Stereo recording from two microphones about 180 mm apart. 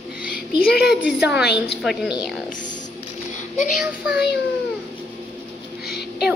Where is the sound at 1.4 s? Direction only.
65° left (ahead or behind).